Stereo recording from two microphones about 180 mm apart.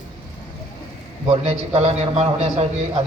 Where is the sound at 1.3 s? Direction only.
35° right (ahead or behind).